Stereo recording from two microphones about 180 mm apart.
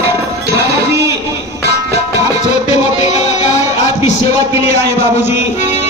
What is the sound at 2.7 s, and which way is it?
Music, 40° left (ahead or behind).